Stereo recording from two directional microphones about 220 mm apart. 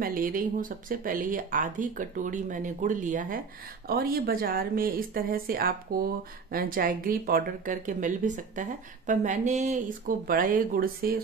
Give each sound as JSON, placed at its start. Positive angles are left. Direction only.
{"t": 0.0, "sound": "speech", "side_deg": -40}